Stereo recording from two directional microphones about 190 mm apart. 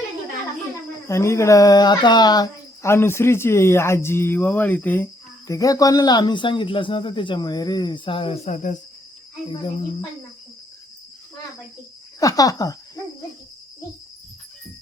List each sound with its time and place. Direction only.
1.0 s speech: 15° left (ahead or behind); by 8.8 s 40° left (ahead or behind)
12.2 s speech: 20° left (ahead or behind)